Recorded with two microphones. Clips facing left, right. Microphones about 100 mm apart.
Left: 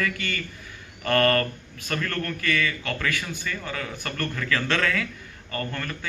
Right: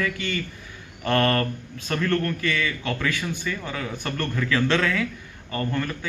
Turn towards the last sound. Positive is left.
turn(degrees=-15)  # may be behind; listen again after turning